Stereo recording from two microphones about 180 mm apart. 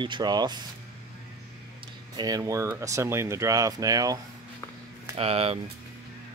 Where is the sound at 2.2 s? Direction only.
20° right (ahead or behind).